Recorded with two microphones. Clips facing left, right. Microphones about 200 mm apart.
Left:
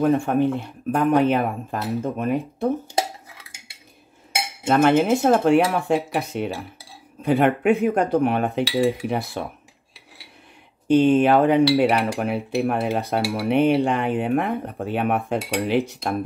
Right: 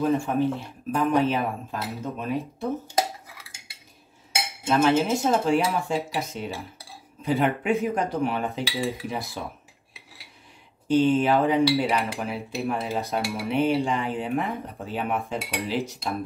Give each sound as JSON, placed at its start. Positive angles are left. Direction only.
{"t": 0.0, "sound": "speech", "side_deg": 55}
{"t": 4.6, "sound": "speech", "side_deg": 55}
{"t": 10.9, "sound": "speech", "side_deg": 60}